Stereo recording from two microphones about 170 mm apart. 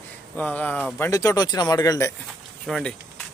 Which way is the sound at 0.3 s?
10° left (ahead or behind).